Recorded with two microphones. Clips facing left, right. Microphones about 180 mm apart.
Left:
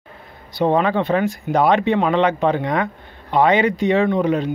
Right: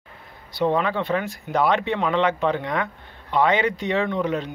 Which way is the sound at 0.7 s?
50° left (ahead or behind).